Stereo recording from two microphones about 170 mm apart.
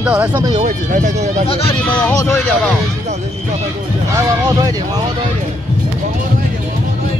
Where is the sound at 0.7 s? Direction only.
45° right (ahead or behind).